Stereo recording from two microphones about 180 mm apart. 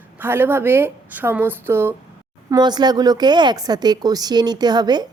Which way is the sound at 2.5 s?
25° right (ahead or behind).